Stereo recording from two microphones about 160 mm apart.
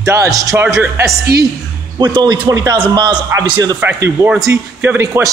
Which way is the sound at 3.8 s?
15° right (ahead or behind).